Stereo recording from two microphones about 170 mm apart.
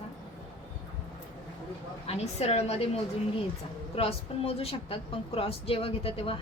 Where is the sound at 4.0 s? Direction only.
35° left (ahead or behind).